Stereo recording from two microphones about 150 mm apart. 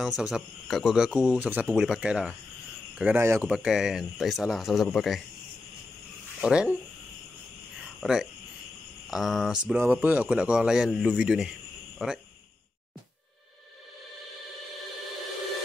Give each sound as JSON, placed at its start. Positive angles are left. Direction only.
{"t": 0.0, "sound": "speech", "side_deg": -5}
{"t": 3.4, "sound": "speech", "side_deg": -5}
{"t": 6.4, "sound": "speech", "side_deg": -5}
{"t": 8.0, "sound": "speech", "side_deg": 0}